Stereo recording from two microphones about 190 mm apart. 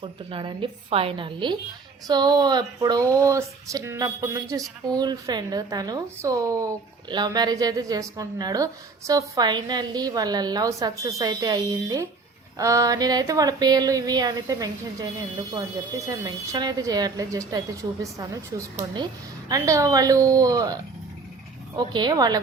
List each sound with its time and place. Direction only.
0.0 s a woman's voice: 25° right (ahead or behind)
21.8 s a woman's voice: 20° right (ahead or behind)